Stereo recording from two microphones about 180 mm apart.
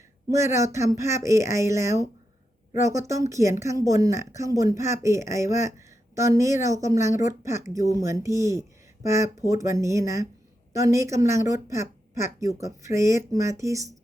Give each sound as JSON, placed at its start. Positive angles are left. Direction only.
{"t": 0.3, "sound": "speech", "side_deg": -15}
{"t": 3.1, "sound": "speech", "side_deg": -15}